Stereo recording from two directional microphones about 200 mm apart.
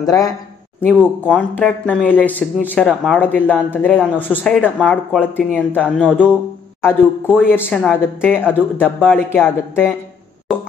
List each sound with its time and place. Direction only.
0.0 s speech: 15° left (ahead or behind)
0.8 s speech: 5° left (ahead or behind)
5.3 s speech: 10° left (ahead or behind)
5.9 s speech: 5° right (ahead or behind)
7.3 s speech: 10° left (ahead or behind)